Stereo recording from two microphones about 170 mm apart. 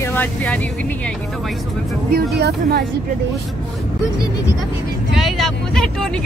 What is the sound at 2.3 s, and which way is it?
Speech, 70° right (ahead or behind).